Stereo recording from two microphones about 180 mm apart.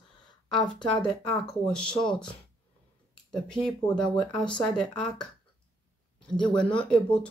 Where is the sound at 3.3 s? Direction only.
5° left (ahead or behind).